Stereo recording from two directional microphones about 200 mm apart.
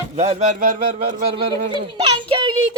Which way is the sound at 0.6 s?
45° right (ahead or behind).